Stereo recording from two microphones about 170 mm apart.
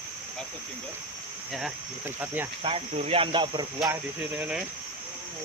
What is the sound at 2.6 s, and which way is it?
Speech, 35° right (ahead or behind).